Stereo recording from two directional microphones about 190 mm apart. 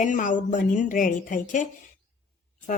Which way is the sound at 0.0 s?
40° left (ahead or behind).